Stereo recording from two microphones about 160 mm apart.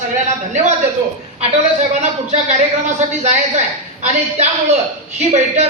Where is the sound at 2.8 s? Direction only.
45° right (ahead or behind).